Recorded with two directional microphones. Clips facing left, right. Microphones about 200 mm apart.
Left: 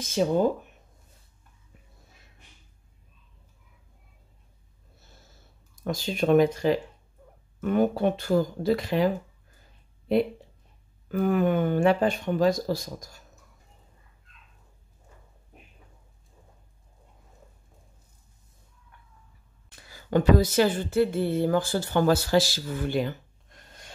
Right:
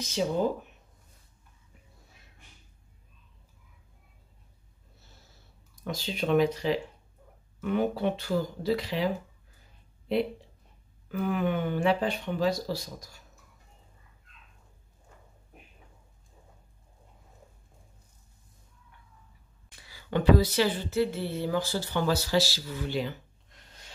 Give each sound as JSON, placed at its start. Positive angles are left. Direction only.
{"t": 0.0, "sound": "speech", "side_deg": 50}
{"t": 5.9, "sound": "speech", "side_deg": 50}
{"t": 11.1, "sound": "speech", "side_deg": 45}
{"t": 19.7, "sound": "speech", "side_deg": 45}